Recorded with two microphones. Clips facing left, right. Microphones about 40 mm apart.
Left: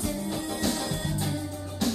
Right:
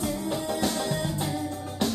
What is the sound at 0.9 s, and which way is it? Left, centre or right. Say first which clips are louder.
Music: right 2 dB; right.